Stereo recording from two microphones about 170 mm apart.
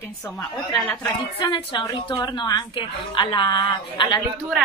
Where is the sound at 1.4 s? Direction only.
25° left (ahead or behind).